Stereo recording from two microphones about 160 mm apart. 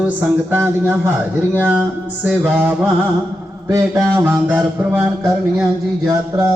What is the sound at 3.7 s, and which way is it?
Speech, 20° right (ahead or behind).